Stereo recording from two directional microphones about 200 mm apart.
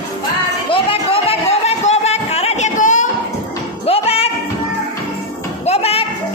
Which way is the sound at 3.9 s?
30° left (ahead or behind).